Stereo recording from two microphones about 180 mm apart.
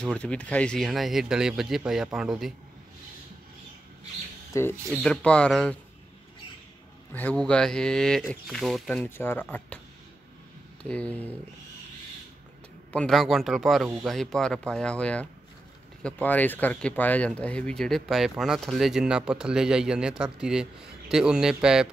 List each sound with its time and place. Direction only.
0.2 s speech: 5° left (ahead or behind)
4.5 s speech: 15° left (ahead or behind)
5.0 s speech: 5° left (ahead or behind)
7.2 s speech: 10° left (ahead or behind)
10.8 s speech: 5° left (ahead or behind)
12.9 s speech: centre (ahead or behind)